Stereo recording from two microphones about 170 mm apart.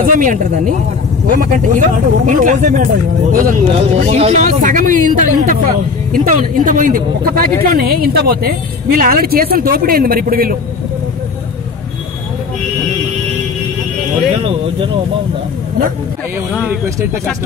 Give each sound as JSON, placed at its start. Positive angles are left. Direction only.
{"t": 0.0, "sound": "speech", "side_deg": -55}
{"t": 14.4, "sound": "speech", "side_deg": -35}